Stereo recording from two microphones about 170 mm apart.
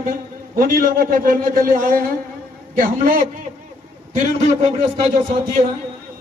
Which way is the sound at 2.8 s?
55° right (ahead or behind).